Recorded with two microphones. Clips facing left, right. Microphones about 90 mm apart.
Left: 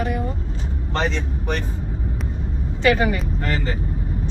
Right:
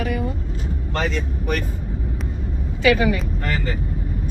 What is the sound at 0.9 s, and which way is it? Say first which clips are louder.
Speech: left 1 dB; 30° left (ahead or behind).